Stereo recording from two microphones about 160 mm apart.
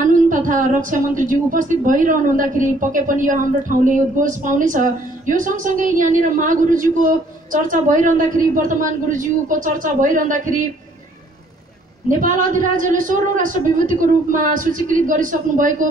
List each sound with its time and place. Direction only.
0.0 s a woman's voice: 55° right (ahead or behind)
12.1 s a woman's voice: 55° right (ahead or behind)